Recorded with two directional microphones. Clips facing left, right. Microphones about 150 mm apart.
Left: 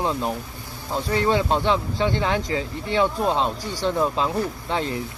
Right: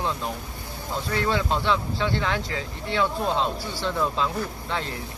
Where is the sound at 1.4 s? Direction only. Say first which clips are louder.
Left 3 dB; 40° left (ahead or behind).